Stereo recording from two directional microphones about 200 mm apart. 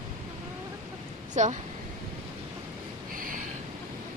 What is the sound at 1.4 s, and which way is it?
Speech, 35° right (ahead or behind).